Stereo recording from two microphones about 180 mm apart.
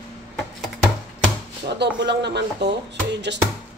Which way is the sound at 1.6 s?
70° right (ahead or behind).